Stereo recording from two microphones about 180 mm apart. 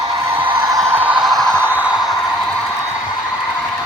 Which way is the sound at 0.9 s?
10° right (ahead or behind).